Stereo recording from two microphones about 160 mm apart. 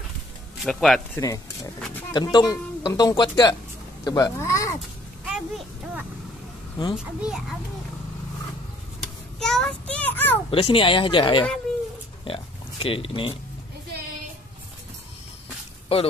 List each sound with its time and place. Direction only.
0.6 s speech: centre (ahead or behind)
1.1 s speech: 20° left (ahead or behind)
5.2 s a sound: 5° right (ahead or behind)
7.0 s a child's voice: 5° right (ahead or behind)
9.4 s child singing: 5° left (ahead or behind)
9.9 s a sound: 10° left (ahead or behind)
10.5 s speech: 35° left (ahead or behind)
15.9 s speech: 40° left (ahead or behind)